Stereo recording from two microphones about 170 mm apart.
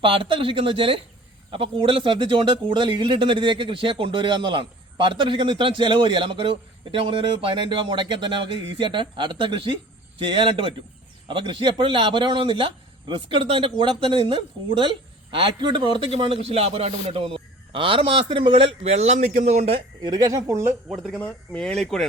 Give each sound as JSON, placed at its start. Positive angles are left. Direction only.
{"t": 0.0, "sound": "a man's voice", "side_deg": -30}
{"t": 20.0, "sound": "a man's voice", "side_deg": -25}
{"t": 21.2, "sound": "speech", "side_deg": 10}